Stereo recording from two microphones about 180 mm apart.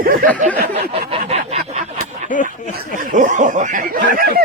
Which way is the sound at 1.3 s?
35° right (ahead or behind).